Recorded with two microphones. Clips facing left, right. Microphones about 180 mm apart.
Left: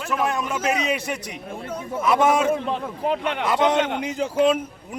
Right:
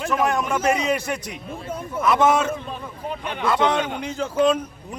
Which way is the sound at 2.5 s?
70° left (ahead or behind).